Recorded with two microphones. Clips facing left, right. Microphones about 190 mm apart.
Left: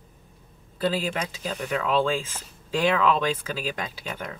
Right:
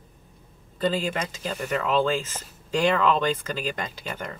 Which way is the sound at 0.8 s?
5° left (ahead or behind).